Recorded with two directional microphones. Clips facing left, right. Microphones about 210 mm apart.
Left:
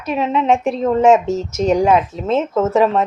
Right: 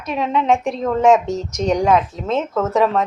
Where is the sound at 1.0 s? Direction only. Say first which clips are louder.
Left 1 dB; 5° left (ahead or behind).